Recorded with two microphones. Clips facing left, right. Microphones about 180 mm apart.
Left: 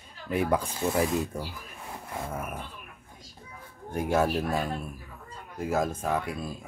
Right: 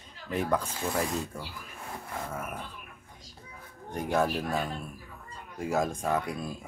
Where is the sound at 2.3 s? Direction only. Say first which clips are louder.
Left 2 dB; 10° left (ahead or behind).